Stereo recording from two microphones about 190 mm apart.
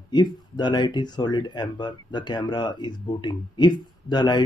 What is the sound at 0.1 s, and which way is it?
Speech, 25° left (ahead or behind).